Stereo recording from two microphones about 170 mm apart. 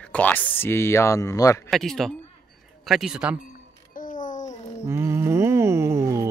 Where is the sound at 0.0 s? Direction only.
10° left (ahead or behind).